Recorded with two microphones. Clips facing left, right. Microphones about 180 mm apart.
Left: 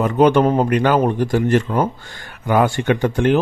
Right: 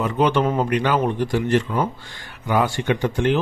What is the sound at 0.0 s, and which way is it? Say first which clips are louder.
Speech: left 6 dB; 45° left (ahead or behind).